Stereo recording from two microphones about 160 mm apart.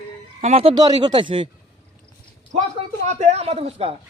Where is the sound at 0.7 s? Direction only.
25° right (ahead or behind).